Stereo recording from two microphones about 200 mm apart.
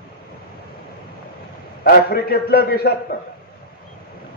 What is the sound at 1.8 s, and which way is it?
A man's voice, 50° left (ahead or behind).